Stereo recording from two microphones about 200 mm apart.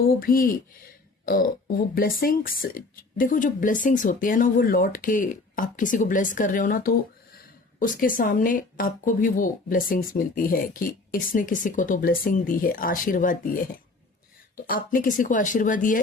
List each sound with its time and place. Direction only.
0.1 s speech: 45° left (ahead or behind)